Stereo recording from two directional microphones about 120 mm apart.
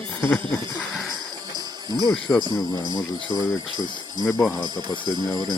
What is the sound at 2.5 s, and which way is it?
Speech, 35° left (ahead or behind).